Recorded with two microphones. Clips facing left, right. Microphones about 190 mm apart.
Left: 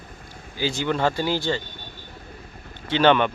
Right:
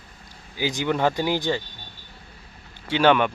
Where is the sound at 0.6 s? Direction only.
15° right (ahead or behind).